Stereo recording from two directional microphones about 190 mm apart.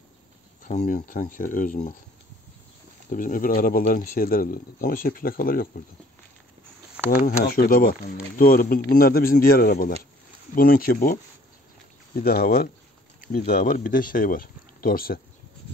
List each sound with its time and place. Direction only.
0.7 s speech: 45° left (ahead or behind)
3.1 s speech: 45° left (ahead or behind)
7.2 s speech: 45° left (ahead or behind)
12.2 s speech: 50° left (ahead or behind)